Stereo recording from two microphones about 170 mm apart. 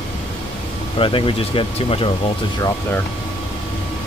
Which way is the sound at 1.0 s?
30° left (ahead or behind).